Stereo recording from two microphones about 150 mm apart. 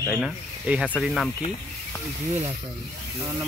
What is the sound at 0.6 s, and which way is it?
Speech, 10° right (ahead or behind).